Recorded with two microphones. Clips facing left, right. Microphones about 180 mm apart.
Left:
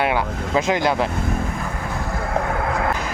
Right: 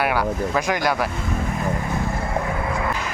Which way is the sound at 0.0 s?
20° left (ahead or behind).